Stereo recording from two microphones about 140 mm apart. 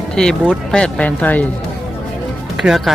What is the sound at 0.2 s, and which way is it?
Speech, 5° left (ahead or behind).